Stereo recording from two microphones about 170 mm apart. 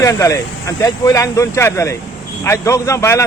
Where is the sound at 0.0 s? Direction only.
20° left (ahead or behind).